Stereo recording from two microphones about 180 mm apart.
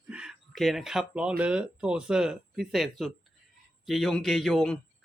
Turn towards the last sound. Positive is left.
turn(degrees=0)  # may be behind; listen again after turning